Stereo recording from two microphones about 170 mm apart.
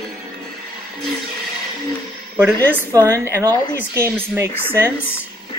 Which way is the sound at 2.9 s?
15° right (ahead or behind).